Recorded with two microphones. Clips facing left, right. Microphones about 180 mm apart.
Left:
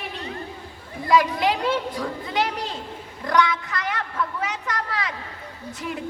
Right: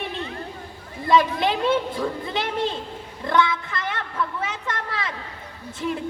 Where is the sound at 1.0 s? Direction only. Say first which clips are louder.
Even; 25° right (ahead or behind).